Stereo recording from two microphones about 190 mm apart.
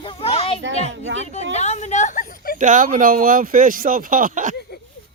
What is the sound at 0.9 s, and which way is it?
Speech, 75° right (ahead or behind).